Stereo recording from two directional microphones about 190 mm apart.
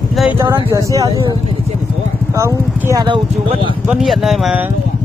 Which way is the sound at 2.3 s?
15° right (ahead or behind).